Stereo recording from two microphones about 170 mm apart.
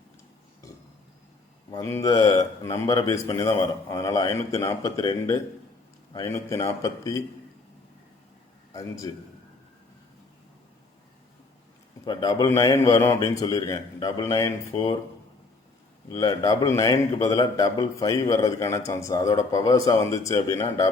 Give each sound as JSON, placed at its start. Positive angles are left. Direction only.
{"t": 1.7, "sound": "a man's voice", "side_deg": 15}
{"t": 8.7, "sound": "a man's voice", "side_deg": 20}
{"t": 12.0, "sound": "a man's voice", "side_deg": 25}
{"t": 16.1, "sound": "a man's voice", "side_deg": 20}